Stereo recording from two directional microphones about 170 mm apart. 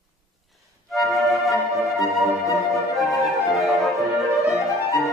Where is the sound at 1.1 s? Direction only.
Centre (ahead or behind).